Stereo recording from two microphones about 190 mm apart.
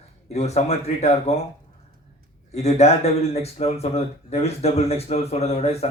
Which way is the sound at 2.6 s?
35° left (ahead or behind).